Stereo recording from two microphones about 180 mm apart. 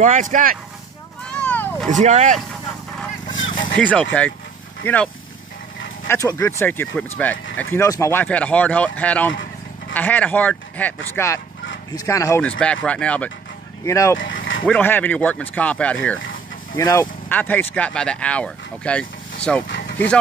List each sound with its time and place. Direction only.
0.0 s speech: 45° right (ahead or behind)
1.3 s vehicle: 10° left (ahead or behind)
1.9 s speech: 40° right (ahead or behind)
3.3 s a sound: 90° left
3.8 s speech: 5° left (ahead or behind)
9.3 s vehicle: 90° left
9.9 s speech: 10° left (ahead or behind)